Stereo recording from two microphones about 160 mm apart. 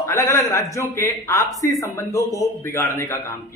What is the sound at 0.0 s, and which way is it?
A man's voice, 20° left (ahead or behind).